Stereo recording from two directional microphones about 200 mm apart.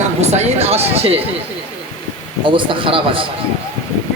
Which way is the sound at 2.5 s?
25° right (ahead or behind).